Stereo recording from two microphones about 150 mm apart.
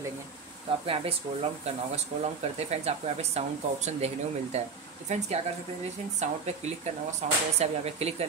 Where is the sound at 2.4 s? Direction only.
45° right (ahead or behind).